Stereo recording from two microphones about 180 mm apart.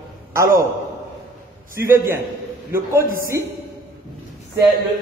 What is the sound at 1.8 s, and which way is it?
A man's voice, 15° right (ahead or behind).